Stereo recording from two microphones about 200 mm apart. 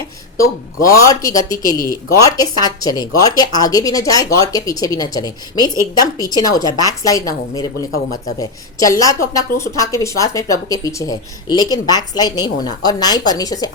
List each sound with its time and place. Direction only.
0.9 s a woman's voice: 15° left (ahead or behind)
1.8 s speech: 45° left (ahead or behind)
2.2 s a woman's voice: 20° left (ahead or behind)